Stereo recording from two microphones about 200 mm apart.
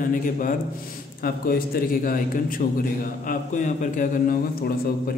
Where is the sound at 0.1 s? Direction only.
40° left (ahead or behind).